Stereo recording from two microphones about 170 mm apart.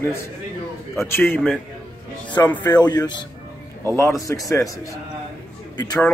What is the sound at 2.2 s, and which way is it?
Speech, 25° left (ahead or behind).